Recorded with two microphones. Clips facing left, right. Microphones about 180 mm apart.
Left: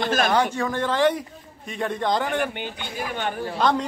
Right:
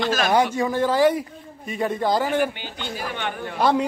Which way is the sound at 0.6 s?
10° right (ahead or behind).